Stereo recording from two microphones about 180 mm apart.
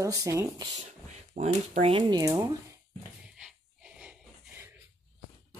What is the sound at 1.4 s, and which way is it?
Speech, 40° right (ahead or behind).